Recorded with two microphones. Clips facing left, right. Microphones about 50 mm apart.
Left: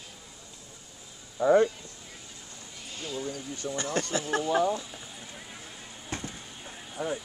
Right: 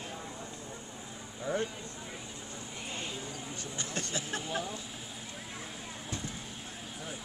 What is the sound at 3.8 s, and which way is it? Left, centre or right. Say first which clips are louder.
Speech: left 8 dB; left.